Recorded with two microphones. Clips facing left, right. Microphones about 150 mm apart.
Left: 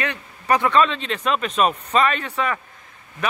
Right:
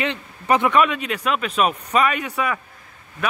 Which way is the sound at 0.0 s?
20° right (ahead or behind).